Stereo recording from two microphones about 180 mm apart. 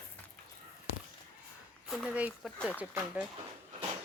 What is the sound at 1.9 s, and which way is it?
Speech, 5° right (ahead or behind).